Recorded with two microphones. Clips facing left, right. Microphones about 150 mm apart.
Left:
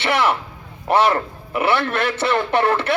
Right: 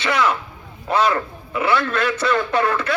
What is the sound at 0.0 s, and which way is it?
A man's voice, 25° left (ahead or behind).